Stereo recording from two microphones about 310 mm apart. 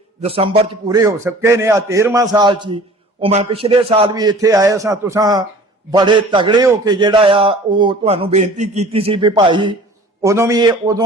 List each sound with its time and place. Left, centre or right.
0.2 s a man's voice: centre